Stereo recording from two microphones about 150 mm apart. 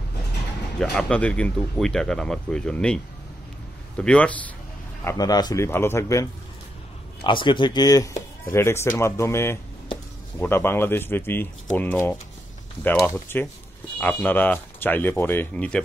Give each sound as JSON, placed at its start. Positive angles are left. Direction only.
{"t": 0.7, "sound": "speech", "side_deg": 5}
{"t": 5.0, "sound": "a man's voice", "side_deg": 25}
{"t": 7.2, "sound": "speech", "side_deg": 30}